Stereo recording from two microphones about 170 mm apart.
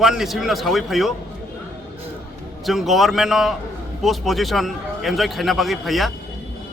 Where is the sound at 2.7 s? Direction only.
Centre (ahead or behind).